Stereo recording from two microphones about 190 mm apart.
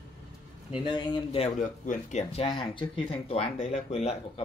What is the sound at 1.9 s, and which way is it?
Speech, 35° left (ahead or behind).